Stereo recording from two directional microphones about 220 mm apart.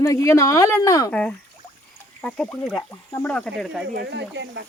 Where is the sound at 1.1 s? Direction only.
5° left (ahead or behind).